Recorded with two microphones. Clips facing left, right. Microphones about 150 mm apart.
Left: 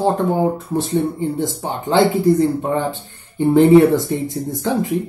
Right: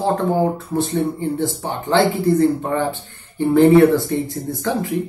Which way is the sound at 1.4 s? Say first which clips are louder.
Even; 15° left (ahead or behind).